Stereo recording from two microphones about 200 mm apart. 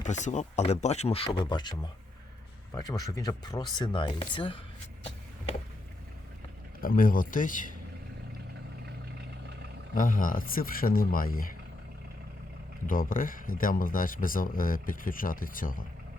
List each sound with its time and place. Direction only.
0.0 s speech: 35° left (ahead or behind)
6.8 s speech: 45° left (ahead or behind)
9.9 s speech: 40° left (ahead or behind)
12.9 s speech: 45° left (ahead or behind)